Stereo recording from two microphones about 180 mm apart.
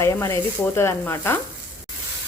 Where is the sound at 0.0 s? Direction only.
15° left (ahead or behind).